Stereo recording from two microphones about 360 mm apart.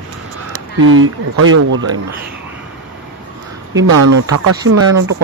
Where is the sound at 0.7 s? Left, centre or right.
Right.